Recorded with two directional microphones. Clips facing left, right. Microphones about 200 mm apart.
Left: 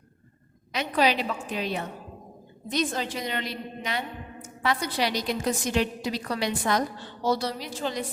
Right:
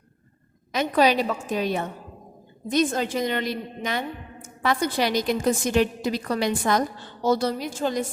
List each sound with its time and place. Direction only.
0.7 s a woman's voice: 45° right (ahead or behind)